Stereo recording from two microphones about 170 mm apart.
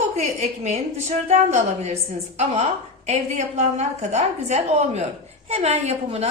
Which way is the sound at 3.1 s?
40° right (ahead or behind).